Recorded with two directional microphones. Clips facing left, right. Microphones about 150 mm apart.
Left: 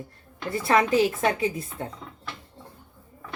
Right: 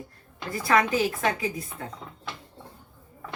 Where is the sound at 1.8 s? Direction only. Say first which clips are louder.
Left 6 dB; 30° left (ahead or behind).